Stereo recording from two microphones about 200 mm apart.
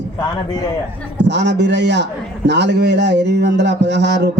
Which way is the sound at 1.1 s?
60° right (ahead or behind).